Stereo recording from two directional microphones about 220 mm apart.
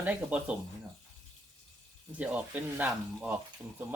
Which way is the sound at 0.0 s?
5° right (ahead or behind).